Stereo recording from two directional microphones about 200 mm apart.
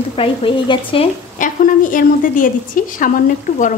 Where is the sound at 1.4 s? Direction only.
40° left (ahead or behind).